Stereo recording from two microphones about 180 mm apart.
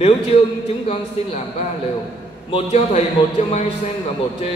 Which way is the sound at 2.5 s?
35° left (ahead or behind).